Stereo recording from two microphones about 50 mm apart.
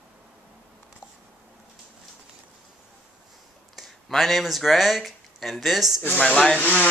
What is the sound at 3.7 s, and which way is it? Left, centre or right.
Speech, centre.